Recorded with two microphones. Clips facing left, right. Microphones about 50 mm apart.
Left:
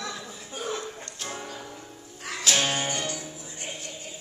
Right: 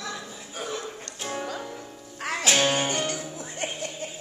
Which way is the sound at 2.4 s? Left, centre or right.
Right.